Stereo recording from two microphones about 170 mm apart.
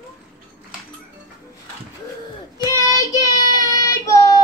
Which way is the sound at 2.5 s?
20° left (ahead or behind).